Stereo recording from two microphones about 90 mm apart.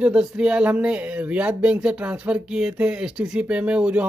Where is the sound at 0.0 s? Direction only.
10° right (ahead or behind).